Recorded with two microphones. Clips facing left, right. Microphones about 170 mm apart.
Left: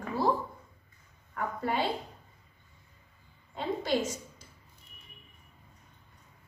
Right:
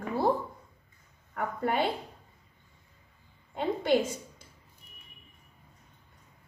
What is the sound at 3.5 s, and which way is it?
Speech, 55° right (ahead or behind).